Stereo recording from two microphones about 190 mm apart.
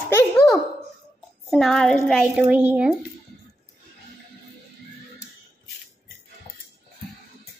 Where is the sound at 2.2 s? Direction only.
10° right (ahead or behind).